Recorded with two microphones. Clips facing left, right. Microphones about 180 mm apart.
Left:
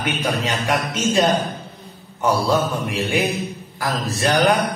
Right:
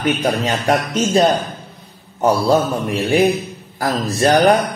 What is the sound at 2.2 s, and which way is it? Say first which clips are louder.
Mantra: right 4 dB; 35° right (ahead or behind).